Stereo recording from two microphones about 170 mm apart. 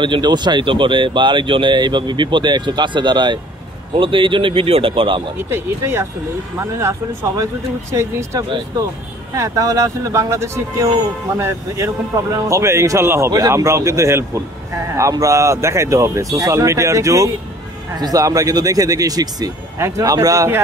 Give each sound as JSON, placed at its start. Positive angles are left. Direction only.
{"t": 0.0, "sound": "speech", "side_deg": -25}
{"t": 5.5, "sound": "speech", "side_deg": -15}